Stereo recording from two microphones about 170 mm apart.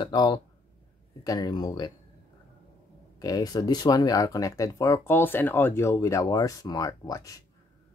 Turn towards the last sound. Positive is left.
turn(degrees=20)  # may be behind; listen again after turning